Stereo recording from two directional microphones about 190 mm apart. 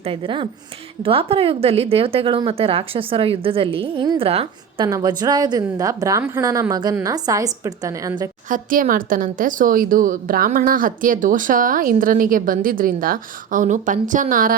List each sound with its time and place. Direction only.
0.0 s a woman's voice: 30° right (ahead or behind)
4.9 s speech: 20° right (ahead or behind)
8.4 s speech: 45° right (ahead or behind)